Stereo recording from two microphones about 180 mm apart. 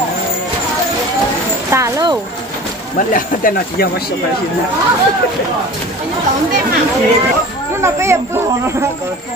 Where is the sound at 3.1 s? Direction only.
50° left (ahead or behind).